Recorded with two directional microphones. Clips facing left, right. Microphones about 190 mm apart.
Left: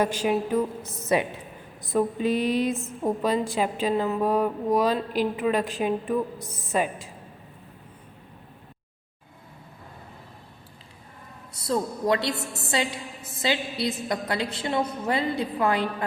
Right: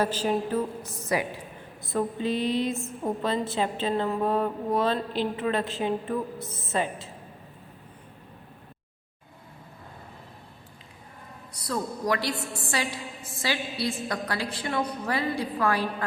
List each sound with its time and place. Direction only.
0.0 s a woman's voice: 10° left (ahead or behind)
1.0 s a woman's voice: 25° left (ahead or behind)
2.2 s mantra: 20° right (ahead or behind)
3.0 s a woman's voice: 15° left (ahead or behind)
6.4 s a woman's voice: centre (ahead or behind)
6.7 s a woman's voice: 15° left (ahead or behind)
11.5 s a woman's voice: 25° left (ahead or behind)